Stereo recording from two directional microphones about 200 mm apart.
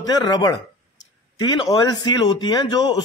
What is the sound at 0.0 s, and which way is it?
Speech, 20° left (ahead or behind).